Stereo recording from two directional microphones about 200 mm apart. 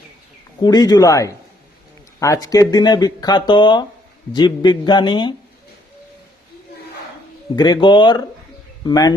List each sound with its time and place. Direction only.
0.6 s speech: 20° left (ahead or behind)
7.5 s speech: 20° left (ahead or behind)